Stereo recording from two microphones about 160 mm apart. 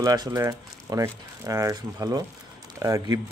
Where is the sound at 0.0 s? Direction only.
25° right (ahead or behind).